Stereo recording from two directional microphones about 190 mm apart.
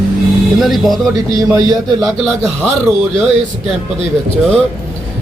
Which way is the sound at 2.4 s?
Centre (ahead or behind).